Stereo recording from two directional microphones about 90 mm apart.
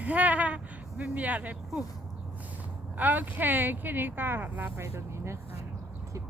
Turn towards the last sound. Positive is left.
turn(degrees=-30)  # may be behind; listen again after turning